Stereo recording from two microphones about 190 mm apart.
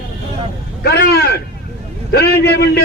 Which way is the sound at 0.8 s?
55° left (ahead or behind).